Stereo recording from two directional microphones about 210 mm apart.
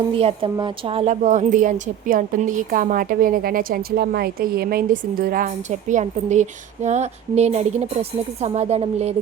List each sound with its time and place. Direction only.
0.1 s speech: 25° right (ahead or behind)